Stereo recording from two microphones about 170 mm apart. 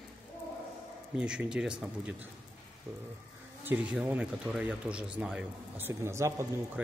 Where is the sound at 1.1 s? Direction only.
5° right (ahead or behind).